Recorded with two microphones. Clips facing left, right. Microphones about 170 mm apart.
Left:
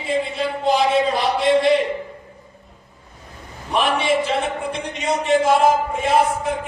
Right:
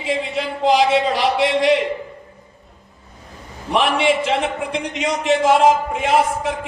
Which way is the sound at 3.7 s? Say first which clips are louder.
Right 2 dB; 80° right.